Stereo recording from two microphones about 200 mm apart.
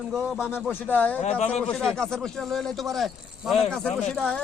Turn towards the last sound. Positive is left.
turn(degrees=5)  # may be behind; listen again after turning